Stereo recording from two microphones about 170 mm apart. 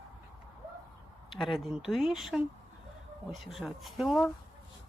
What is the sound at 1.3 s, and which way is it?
Speech, centre (ahead or behind).